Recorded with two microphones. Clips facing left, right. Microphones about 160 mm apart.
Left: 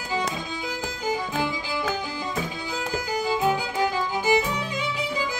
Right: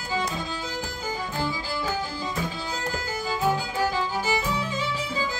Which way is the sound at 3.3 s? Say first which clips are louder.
Left 1 dB; 15° left (ahead or behind).